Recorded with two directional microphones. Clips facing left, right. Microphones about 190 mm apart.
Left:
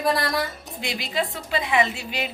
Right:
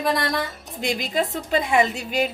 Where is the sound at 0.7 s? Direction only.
45° right (ahead or behind).